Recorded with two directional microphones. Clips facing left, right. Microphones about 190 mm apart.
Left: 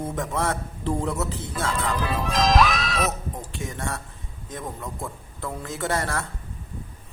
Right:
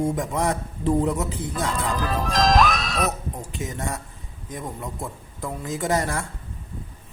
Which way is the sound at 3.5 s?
20° right (ahead or behind).